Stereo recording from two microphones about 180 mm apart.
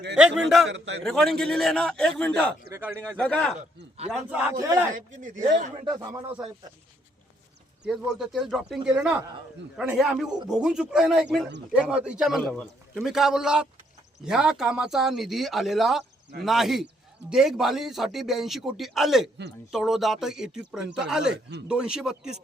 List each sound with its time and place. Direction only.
0.2 s speech: 5° right (ahead or behind)
2.7 s a man's voice: 10° right (ahead or behind)
3.2 s speech: 5° left (ahead or behind)
4.3 s a man's voice: 10° right (ahead or behind)
4.9 s speech: 45° right (ahead or behind)
5.7 s speech: 20° right (ahead or behind)
7.9 s speech: centre (ahead or behind)